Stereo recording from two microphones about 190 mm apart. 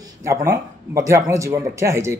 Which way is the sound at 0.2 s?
15° right (ahead or behind).